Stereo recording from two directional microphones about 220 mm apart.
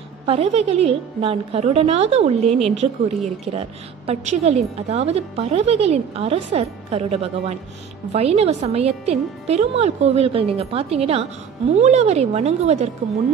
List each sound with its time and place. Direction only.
0.3 s a woman's voice: 30° right (ahead or behind)